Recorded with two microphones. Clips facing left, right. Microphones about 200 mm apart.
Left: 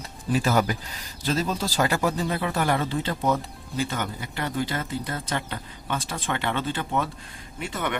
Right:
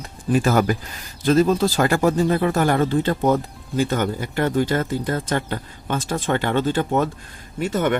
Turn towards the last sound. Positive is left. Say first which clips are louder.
# right 9 dB
turn(degrees=-45)  # may be behind; listen again after turning